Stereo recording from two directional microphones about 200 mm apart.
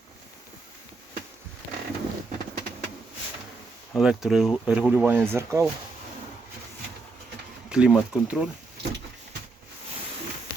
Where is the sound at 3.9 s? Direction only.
Centre (ahead or behind).